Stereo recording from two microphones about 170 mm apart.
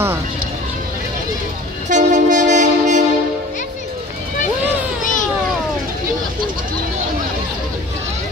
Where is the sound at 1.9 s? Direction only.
45° right (ahead or behind).